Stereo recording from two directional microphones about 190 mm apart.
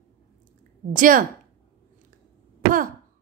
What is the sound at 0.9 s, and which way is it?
Speech, 45° right (ahead or behind).